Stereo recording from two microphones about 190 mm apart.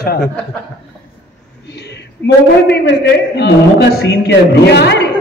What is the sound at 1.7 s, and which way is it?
A man's voice, 65° left (ahead or behind).